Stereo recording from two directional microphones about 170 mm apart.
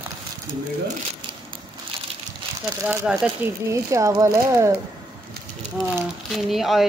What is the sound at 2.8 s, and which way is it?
Speech, 15° right (ahead or behind).